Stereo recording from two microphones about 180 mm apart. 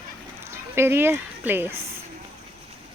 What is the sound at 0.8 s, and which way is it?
Speech, 15° right (ahead or behind).